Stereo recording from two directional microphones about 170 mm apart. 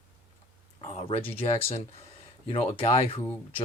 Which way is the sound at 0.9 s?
35° left (ahead or behind).